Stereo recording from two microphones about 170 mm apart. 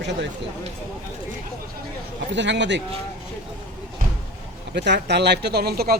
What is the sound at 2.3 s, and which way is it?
Speech, 90° right.